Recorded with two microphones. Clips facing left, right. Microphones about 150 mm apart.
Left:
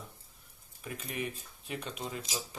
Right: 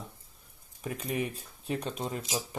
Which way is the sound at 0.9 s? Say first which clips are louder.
Right 5 dB; 35° right (ahead or behind).